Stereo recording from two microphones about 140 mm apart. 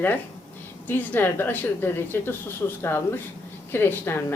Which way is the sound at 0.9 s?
10° left (ahead or behind).